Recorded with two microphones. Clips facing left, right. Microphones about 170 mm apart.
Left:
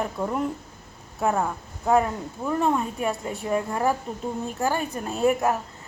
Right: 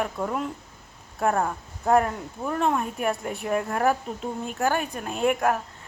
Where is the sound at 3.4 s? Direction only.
25° left (ahead or behind).